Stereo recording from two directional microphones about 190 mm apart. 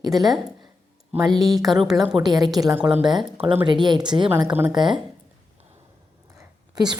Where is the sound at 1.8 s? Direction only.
Centre (ahead or behind).